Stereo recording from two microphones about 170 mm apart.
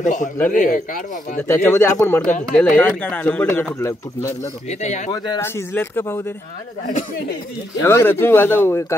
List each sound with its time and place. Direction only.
0.0 s speech: 50° left (ahead or behind)
1.5 s speech: 15° left (ahead or behind)
4.6 s speech: 45° left (ahead or behind)
5.1 s a man's voice: 25° left (ahead or behind)
5.4 s speech: 10° left (ahead or behind)
7.8 s speech: 15° left (ahead or behind)